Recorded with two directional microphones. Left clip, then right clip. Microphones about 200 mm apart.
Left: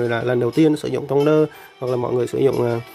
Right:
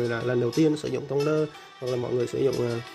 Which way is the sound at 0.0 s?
20° left (ahead or behind).